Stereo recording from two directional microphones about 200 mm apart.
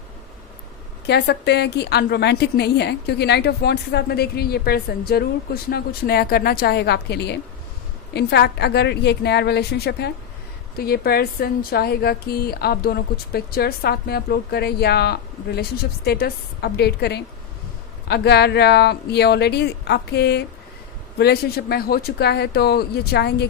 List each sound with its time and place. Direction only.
1.0 s a woman's voice: 55° left (ahead or behind)